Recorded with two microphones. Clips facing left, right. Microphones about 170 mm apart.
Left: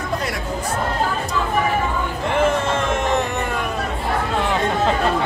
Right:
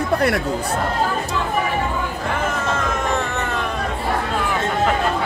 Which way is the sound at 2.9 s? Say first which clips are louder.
Left 2 dB; 20° left (ahead or behind).